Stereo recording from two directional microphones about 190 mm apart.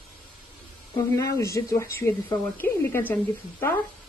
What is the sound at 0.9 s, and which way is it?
Speech, 15° left (ahead or behind).